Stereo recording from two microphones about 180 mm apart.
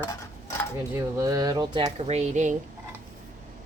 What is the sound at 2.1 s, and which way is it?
Speech, 40° right (ahead or behind).